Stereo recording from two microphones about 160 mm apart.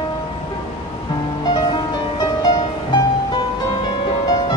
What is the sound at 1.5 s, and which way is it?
Music, 25° left (ahead or behind).